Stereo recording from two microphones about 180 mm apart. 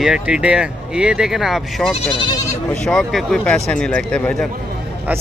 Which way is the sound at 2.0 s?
30° left (ahead or behind).